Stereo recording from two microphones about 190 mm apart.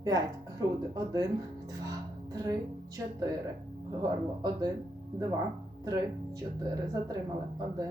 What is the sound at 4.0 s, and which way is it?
Speech, 20° right (ahead or behind).